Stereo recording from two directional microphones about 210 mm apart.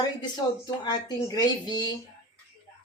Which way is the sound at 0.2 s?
20° left (ahead or behind).